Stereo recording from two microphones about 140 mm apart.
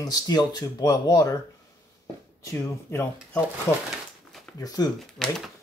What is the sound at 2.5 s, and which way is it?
Speech, 20° left (ahead or behind).